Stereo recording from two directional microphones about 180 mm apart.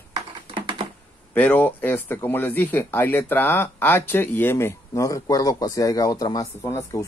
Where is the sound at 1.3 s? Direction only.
10° left (ahead or behind).